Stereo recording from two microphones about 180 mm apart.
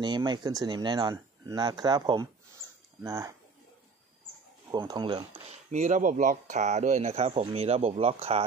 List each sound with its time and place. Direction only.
0.0 s speech: 25° right (ahead or behind)
4.6 s speech: 25° right (ahead or behind)
5.7 s speech: 40° right (ahead or behind)